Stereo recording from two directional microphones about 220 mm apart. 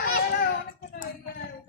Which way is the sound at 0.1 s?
45° left (ahead or behind).